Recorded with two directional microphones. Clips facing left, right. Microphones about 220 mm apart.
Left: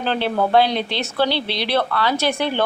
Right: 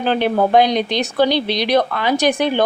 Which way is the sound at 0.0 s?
15° right (ahead or behind).